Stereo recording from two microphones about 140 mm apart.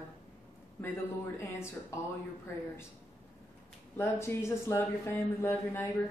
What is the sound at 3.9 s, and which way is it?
A woman's voice, 20° left (ahead or behind).